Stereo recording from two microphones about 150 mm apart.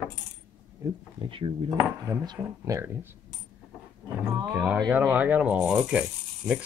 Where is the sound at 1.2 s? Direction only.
35° right (ahead or behind).